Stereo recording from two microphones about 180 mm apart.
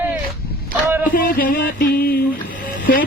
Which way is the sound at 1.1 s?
50° left (ahead or behind).